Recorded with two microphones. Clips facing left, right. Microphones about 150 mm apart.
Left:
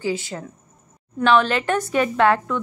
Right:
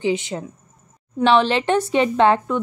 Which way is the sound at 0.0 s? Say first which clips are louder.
Right 4 dB; 20° right (ahead or behind).